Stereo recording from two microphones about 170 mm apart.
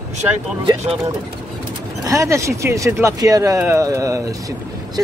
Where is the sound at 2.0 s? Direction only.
20° right (ahead or behind).